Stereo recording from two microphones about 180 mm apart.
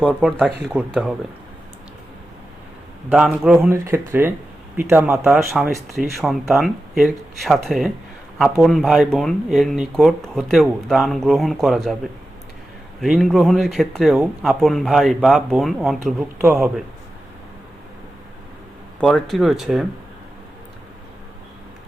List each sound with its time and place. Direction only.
0.2 s speech: 5° right (ahead or behind)
3.1 s speech: 5° right (ahead or behind)
5.7 s speech: 15° right (ahead or behind)
6.5 s speech: centre (ahead or behind)
13.0 s speech: centre (ahead or behind)
16.4 s speech: 15° right (ahead or behind)
18.9 s speech: 5° left (ahead or behind)